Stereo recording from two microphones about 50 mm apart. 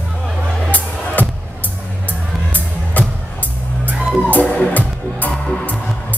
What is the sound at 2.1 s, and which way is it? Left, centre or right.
Music, left.